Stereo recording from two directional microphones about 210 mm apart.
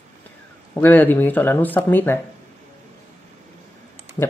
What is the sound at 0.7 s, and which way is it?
Speech, 10° left (ahead or behind).